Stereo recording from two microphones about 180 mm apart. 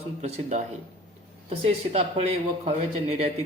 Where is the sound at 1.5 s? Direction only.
35° right (ahead or behind).